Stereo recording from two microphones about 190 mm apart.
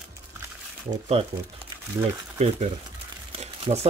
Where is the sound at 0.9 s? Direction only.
35° right (ahead or behind).